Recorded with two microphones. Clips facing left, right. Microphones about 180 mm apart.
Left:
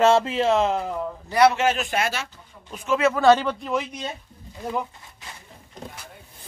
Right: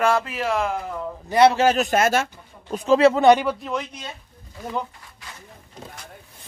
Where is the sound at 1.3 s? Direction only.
30° right (ahead or behind).